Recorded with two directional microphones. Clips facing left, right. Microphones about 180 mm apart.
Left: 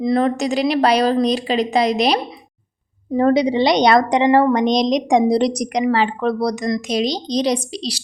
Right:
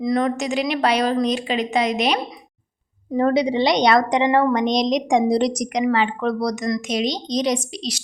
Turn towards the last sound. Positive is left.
turn(degrees=35)  # may be behind; listen again after turning